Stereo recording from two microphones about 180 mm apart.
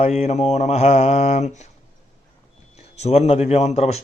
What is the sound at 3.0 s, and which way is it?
Speech, 35° left (ahead or behind).